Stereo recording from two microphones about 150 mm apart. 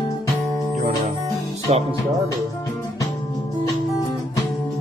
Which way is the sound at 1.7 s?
45° right (ahead or behind).